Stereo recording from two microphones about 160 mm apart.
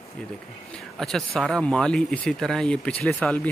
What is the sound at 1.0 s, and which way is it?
Speech, centre (ahead or behind).